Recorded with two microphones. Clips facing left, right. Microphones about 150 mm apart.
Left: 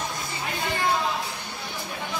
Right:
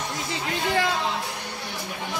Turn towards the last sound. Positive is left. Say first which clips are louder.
# right 2 dB
turn(degrees=-90)